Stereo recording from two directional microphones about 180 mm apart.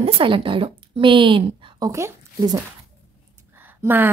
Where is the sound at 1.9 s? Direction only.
15° right (ahead or behind).